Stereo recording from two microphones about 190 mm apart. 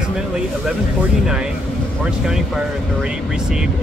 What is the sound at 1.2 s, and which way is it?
Speech, 5° right (ahead or behind).